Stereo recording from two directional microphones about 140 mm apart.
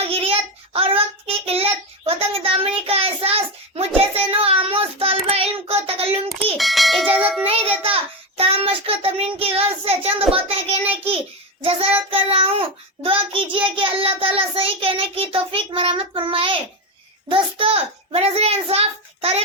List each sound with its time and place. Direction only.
0.0 s child singing: 40° right (ahead or behind)
6.6 s bell: centre (ahead or behind)
7.4 s child singing: 45° right (ahead or behind)
10.3 s a sound: 45° right (ahead or behind)
11.6 s child singing: 45° right (ahead or behind)
17.2 s a sound: 40° right (ahead or behind)